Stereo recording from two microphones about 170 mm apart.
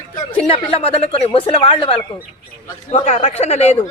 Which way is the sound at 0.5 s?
30° left (ahead or behind).